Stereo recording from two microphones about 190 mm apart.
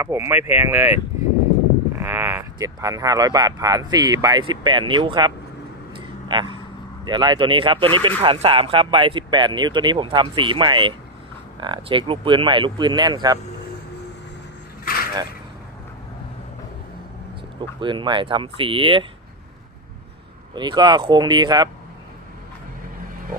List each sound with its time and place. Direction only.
0.0 s speech: 15° right (ahead or behind)
2.0 s speech: 10° right (ahead or behind)
5.9 s a sound: 25° right (ahead or behind)
7.1 s speech: 25° right (ahead or behind)
17.7 s speech: 25° right (ahead or behind)
20.5 s speech: 25° right (ahead or behind)